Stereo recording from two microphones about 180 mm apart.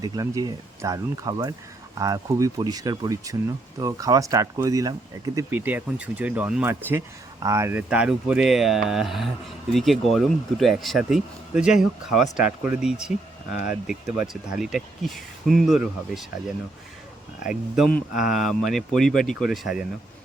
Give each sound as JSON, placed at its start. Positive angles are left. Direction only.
{"t": 0.0, "sound": "speech", "side_deg": -20}
{"t": 17.4, "sound": "speech", "side_deg": -5}